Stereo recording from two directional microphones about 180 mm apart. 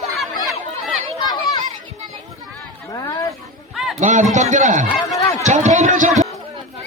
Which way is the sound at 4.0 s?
45° right (ahead or behind).